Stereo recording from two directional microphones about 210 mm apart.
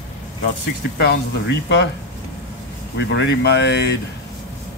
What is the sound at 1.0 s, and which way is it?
Speech, 55° left (ahead or behind).